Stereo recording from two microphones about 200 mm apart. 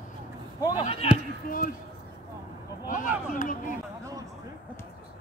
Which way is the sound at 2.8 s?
40° left (ahead or behind).